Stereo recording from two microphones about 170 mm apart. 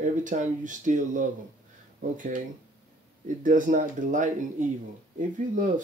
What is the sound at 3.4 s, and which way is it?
Speech, 50° right (ahead or behind).